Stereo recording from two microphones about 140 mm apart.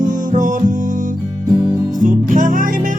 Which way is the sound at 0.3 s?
65° right (ahead or behind).